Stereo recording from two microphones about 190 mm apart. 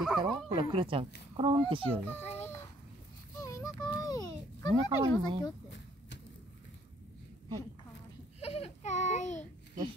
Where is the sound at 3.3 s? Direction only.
15° left (ahead or behind).